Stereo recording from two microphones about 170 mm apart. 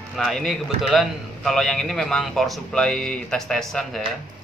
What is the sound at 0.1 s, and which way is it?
A man's voice, centre (ahead or behind).